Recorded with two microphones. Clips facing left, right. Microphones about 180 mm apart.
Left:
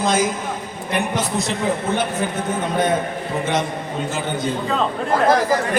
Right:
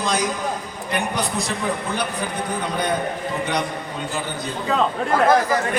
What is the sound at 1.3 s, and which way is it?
A man's voice, 20° left (ahead or behind).